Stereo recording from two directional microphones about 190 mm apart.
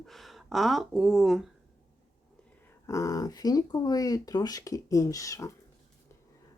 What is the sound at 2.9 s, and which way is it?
Speech, 15° left (ahead or behind).